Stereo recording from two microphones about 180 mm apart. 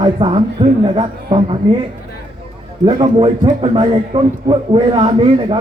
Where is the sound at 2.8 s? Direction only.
30° right (ahead or behind).